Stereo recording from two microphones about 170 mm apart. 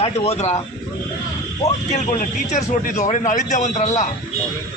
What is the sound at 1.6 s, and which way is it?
A man's voice, 40° left (ahead or behind).